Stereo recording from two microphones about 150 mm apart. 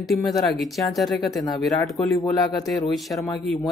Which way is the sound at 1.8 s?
20° left (ahead or behind).